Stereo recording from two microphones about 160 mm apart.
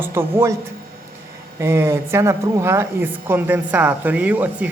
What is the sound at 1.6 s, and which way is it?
A woman's voice, 15° right (ahead or behind).